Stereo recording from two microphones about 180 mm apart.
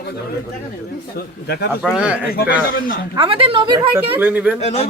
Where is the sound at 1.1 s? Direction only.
65° left (ahead or behind).